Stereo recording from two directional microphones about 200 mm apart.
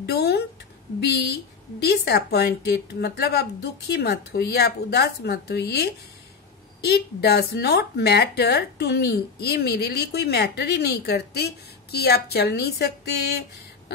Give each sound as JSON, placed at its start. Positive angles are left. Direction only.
{"t": 0.0, "sound": "a woman's voice", "side_deg": 55}